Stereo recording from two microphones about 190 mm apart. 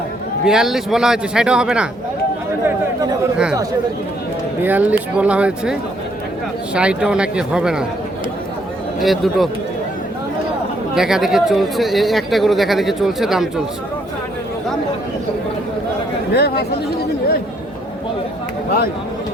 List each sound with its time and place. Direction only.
0.4 s speech: 5° right (ahead or behind)
4.6 s speech: 10° right (ahead or behind)
6.7 s speech: 5° right (ahead or behind)
9.0 s speech: centre (ahead or behind)
10.9 s speech: 5° right (ahead or behind)
16.3 s speech: 55° left (ahead or behind)